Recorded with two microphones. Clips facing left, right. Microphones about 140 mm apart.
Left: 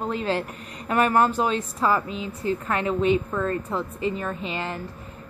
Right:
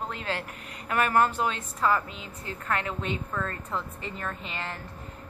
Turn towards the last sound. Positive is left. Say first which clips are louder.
# left 6 dB
turn(degrees=20)  # may be behind; listen again after turning